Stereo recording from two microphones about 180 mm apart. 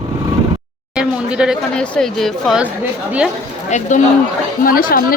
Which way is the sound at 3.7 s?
40° left (ahead or behind).